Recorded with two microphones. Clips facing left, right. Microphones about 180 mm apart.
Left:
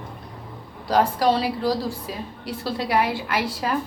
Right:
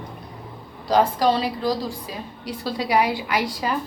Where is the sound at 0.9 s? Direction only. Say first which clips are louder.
Right 1 dB; centre (ahead or behind).